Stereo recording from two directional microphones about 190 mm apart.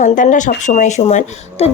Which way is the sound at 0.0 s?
40° left (ahead or behind).